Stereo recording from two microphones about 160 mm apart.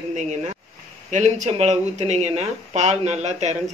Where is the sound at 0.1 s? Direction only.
45° right (ahead or behind).